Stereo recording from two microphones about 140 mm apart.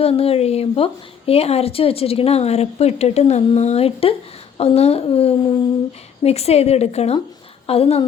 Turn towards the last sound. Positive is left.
turn(degrees=45)  # may be behind; listen again after turning